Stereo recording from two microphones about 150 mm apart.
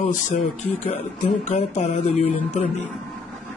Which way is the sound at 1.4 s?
50° left (ahead or behind).